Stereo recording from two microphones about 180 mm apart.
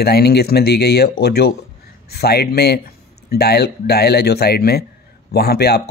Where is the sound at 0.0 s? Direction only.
60° left (ahead or behind).